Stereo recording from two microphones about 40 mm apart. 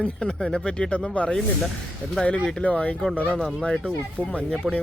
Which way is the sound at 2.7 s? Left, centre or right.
Left.